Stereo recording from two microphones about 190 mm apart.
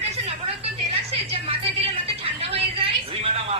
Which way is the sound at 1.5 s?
30° right (ahead or behind).